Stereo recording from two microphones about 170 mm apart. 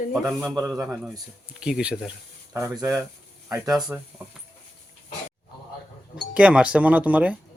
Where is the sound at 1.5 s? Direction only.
5° right (ahead or behind).